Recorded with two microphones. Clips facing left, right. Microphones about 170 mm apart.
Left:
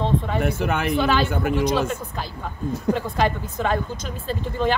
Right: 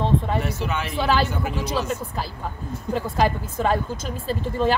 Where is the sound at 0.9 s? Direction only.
5° right (ahead or behind).